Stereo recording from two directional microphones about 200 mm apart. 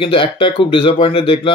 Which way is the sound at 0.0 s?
25° left (ahead or behind).